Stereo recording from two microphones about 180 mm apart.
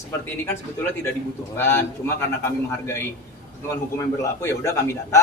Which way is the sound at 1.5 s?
15° left (ahead or behind).